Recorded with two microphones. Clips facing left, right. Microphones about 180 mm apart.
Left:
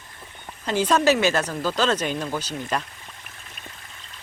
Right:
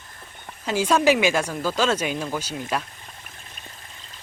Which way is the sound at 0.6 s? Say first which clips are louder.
Even; 10° right (ahead or behind).